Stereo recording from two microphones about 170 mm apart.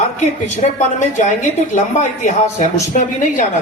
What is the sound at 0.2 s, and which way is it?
Speech, 45° left (ahead or behind).